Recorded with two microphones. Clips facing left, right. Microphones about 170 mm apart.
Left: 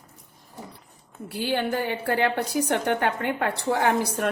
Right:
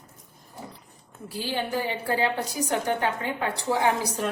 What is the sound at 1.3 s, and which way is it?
A woman's voice, 60° left (ahead or behind).